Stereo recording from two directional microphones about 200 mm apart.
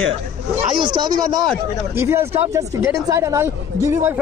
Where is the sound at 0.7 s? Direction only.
25° right (ahead or behind).